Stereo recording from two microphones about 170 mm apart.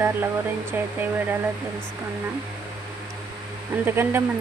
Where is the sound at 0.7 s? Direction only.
10° right (ahead or behind).